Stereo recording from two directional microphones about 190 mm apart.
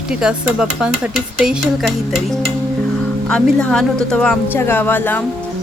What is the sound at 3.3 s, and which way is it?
A woman's voice, 5° left (ahead or behind).